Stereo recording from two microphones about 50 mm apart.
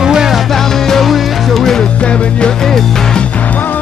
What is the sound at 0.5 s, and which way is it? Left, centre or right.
Music, centre.